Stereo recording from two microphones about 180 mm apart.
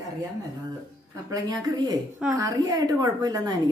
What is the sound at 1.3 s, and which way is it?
A woman's voice, 20° right (ahead or behind).